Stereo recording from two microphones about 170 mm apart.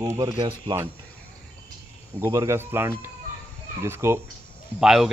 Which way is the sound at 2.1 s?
15° right (ahead or behind).